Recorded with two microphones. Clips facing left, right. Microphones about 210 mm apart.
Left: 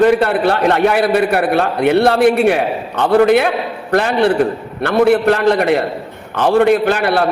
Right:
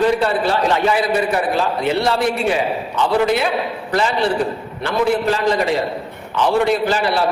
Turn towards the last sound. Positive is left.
turn(degrees=60)  # may be behind; listen again after turning